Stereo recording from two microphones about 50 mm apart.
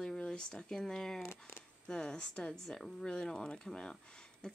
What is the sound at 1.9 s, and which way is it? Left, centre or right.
Speech, centre.